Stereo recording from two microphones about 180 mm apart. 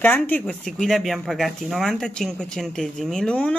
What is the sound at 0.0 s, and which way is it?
Speech, 10° left (ahead or behind).